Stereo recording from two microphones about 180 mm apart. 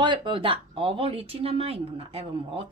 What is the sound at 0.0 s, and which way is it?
Speech, 25° right (ahead or behind).